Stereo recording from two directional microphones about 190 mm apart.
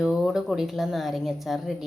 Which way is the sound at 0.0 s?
Centre (ahead or behind).